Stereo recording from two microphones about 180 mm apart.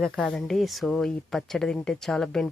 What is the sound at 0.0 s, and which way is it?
Speech, centre (ahead or behind).